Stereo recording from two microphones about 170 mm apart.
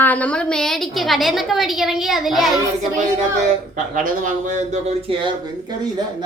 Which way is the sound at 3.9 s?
50° right (ahead or behind).